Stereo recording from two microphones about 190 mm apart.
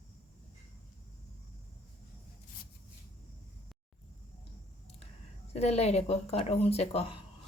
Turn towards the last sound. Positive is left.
turn(degrees=30)  # may be behind; listen again after turning